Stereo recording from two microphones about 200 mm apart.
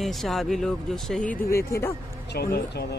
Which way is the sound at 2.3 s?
55° left (ahead or behind).